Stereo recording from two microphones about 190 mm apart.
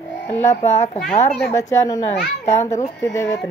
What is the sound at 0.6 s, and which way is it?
Speech, 35° left (ahead or behind).